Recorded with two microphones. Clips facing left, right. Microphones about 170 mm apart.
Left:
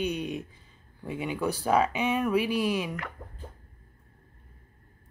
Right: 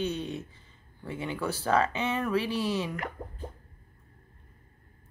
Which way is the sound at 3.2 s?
15° right (ahead or behind).